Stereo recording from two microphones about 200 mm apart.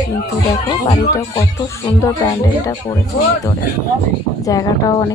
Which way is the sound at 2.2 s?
15° left (ahead or behind).